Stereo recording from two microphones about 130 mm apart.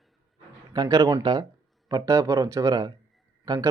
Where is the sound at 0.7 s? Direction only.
30° right (ahead or behind).